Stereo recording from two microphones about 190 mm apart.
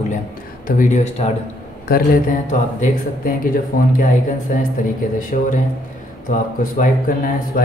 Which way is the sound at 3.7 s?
45° left (ahead or behind).